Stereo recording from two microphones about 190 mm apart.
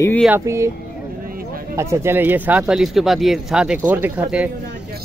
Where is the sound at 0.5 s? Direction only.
15° right (ahead or behind).